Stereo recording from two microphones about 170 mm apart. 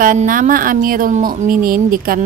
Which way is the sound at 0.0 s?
50° right (ahead or behind).